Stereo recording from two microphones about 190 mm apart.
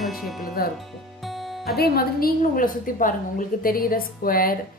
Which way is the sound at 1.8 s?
55° left (ahead or behind).